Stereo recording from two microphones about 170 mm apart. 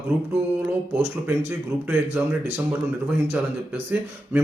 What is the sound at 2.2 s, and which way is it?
Speech, 10° right (ahead or behind).